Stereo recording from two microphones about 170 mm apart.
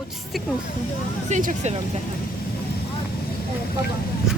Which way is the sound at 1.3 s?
50° right (ahead or behind).